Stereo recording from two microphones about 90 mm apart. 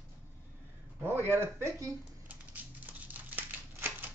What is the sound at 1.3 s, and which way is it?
Speech, 30° right (ahead or behind).